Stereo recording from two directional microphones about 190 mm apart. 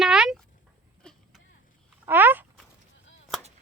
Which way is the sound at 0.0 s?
5° right (ahead or behind).